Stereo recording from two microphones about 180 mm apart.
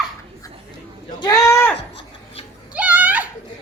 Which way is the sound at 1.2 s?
20° left (ahead or behind).